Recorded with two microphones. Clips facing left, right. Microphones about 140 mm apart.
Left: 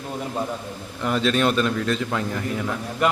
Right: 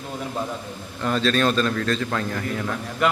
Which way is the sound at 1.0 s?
15° left (ahead or behind).